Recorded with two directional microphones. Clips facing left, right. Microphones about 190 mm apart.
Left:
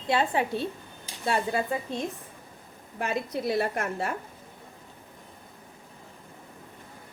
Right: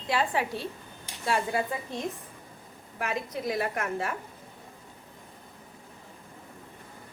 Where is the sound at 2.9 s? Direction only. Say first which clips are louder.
Left 3 dB; 30° left (ahead or behind).